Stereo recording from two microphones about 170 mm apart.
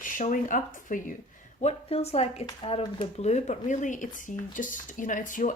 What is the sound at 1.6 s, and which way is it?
A woman's voice, 40° left (ahead or behind).